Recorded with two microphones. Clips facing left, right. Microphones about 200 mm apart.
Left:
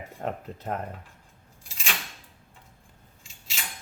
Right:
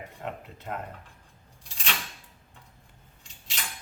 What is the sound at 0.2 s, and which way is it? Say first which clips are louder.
Speech: left 6 dB; 40° left (ahead or behind).